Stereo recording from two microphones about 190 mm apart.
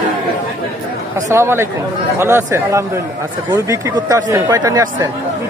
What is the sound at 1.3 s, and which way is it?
Speech, 15° right (ahead or behind).